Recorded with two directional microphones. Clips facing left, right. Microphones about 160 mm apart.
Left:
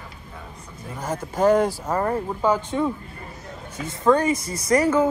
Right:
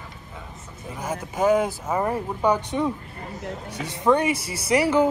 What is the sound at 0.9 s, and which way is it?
Speech, 10° right (ahead or behind).